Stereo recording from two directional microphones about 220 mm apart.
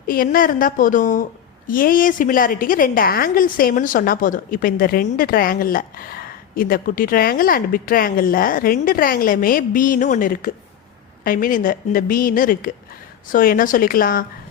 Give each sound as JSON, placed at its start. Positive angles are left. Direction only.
{"t": 0.1, "sound": "a woman's voice", "side_deg": 40}